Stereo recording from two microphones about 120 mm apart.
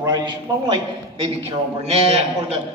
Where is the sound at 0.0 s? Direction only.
35° right (ahead or behind).